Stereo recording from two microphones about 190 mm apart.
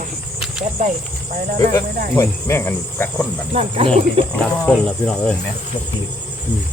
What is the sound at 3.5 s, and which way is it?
Speech, 30° right (ahead or behind).